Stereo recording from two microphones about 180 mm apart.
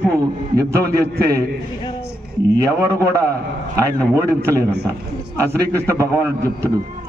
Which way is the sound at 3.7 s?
15° right (ahead or behind).